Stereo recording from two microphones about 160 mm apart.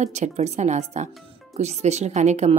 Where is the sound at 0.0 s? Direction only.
45° right (ahead or behind).